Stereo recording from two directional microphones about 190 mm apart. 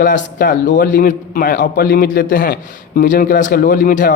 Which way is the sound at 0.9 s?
45° left (ahead or behind).